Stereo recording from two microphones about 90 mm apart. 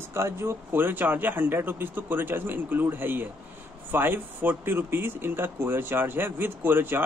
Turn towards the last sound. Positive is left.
turn(degrees=-25)  # may be behind; listen again after turning